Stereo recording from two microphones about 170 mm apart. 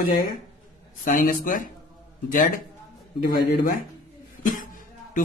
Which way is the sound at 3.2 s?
60° left (ahead or behind).